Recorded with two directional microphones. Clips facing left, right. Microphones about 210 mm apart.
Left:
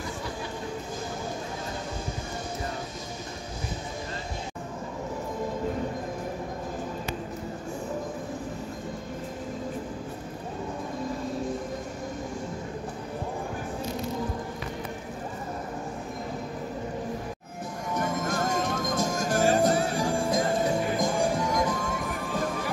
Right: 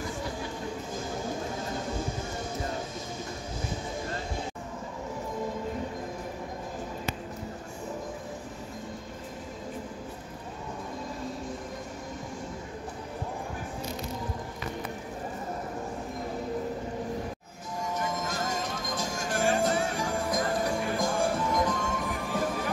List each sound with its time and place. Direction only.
17.9 s music: 55° left (ahead or behind); by 21.7 s 10° left (ahead or behind)